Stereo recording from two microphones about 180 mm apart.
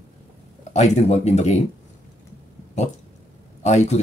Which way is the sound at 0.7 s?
40° left (ahead or behind).